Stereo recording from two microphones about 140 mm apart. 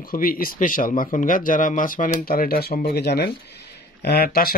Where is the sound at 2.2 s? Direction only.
90° left.